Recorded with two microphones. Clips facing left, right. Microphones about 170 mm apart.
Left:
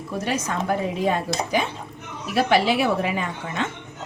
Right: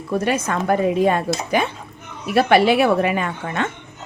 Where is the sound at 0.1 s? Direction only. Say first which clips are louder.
Right 6 dB; 60° right (ahead or behind).